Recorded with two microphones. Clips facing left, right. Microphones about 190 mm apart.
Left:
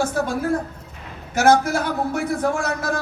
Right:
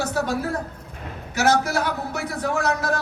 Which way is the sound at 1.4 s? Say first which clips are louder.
Left 4 dB; 50° left (ahead or behind).